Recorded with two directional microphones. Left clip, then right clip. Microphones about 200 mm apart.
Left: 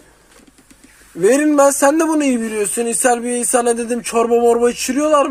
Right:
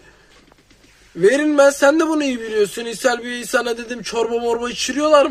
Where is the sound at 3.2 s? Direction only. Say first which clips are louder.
Left 6 dB; 20° left (ahead or behind).